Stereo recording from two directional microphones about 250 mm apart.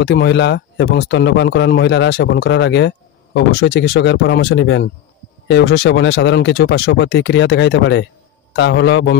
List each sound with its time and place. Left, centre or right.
0.0 s speech: left